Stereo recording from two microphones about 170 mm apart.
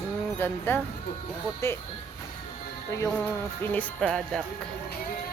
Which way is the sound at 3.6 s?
10° left (ahead or behind).